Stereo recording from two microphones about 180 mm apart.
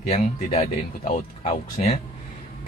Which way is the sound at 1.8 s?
40° left (ahead or behind).